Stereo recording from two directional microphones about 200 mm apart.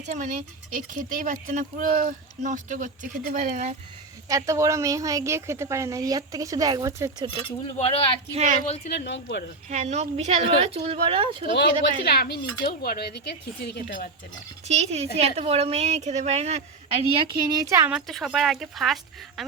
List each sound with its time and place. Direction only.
0.0 s speech: 35° right (ahead or behind)
4.3 s a woman's voice: 15° right (ahead or behind)
7.3 s speech: 30° left (ahead or behind)
8.3 s speech: 35° right (ahead or behind)
8.6 s speech: 30° left (ahead or behind)
8.9 s speech: 60° left (ahead or behind)
9.6 s speech: 35° right (ahead or behind)
12.0 s a woman's voice: 50° left (ahead or behind)
14.7 s speech: 35° right (ahead or behind); by 17.9 s 15° right (ahead or behind)
17.9 s speech: centre (ahead or behind)